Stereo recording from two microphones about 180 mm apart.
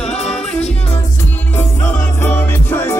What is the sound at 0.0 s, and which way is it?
Music, 35° left (ahead or behind).